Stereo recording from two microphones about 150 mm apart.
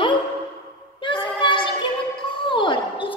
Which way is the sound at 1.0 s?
30° left (ahead or behind).